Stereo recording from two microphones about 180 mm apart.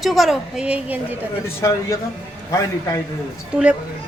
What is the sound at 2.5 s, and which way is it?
Speech, 15° left (ahead or behind).